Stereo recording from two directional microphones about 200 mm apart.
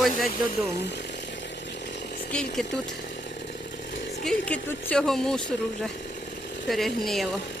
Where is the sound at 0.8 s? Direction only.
55° left (ahead or behind).